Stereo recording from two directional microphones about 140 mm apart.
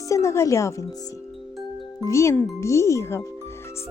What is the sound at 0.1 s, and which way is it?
Speech, 20° left (ahead or behind).